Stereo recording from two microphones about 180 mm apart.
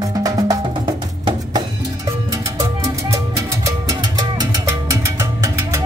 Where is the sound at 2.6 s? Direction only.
15° right (ahead or behind).